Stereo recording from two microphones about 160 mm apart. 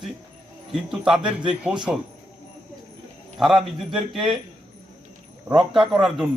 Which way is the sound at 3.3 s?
5° right (ahead or behind).